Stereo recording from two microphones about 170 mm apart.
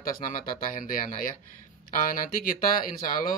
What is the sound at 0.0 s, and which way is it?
Speech, 55° left (ahead or behind).